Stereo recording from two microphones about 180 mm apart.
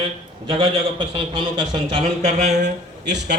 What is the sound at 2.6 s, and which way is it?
Speech, 70° right (ahead or behind).